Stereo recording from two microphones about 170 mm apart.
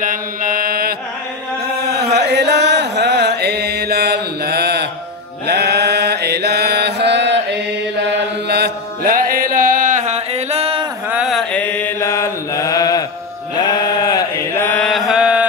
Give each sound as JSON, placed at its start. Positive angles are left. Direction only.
{"t": 0.0, "sound": "mantra", "side_deg": -55}
{"t": 1.9, "sound": "chant", "side_deg": -70}
{"t": 5.5, "sound": "mantra", "side_deg": -70}
{"t": 11.1, "sound": "mantra", "side_deg": -5}
{"t": 13.6, "sound": "chant", "side_deg": 25}
{"t": 14.7, "sound": "mantra", "side_deg": 5}